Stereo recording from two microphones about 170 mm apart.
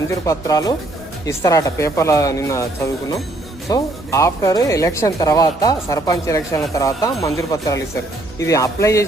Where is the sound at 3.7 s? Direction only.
20° left (ahead or behind).